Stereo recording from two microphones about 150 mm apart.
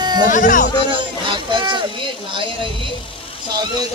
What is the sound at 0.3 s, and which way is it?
Speech, 60° left (ahead or behind).